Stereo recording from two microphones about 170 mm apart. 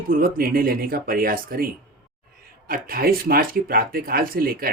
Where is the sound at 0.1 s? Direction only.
60° right (ahead or behind).